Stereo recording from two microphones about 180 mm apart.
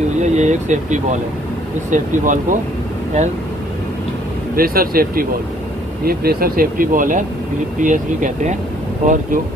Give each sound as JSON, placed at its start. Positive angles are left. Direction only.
{"t": 0.2, "sound": "speech", "side_deg": -40}
{"t": 4.6, "sound": "speech", "side_deg": -55}